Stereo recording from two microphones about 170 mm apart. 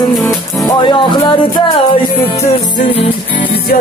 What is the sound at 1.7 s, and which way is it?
Music, 35° left (ahead or behind).